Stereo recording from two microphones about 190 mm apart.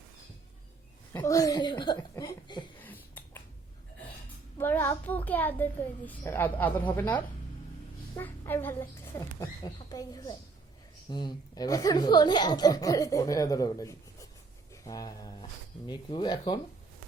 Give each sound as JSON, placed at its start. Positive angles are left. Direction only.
{"t": 1.1, "sound": "speech", "side_deg": 15}
{"t": 2.8, "sound": "finger snapping", "side_deg": 10}
{"t": 4.5, "sound": "speech", "side_deg": 10}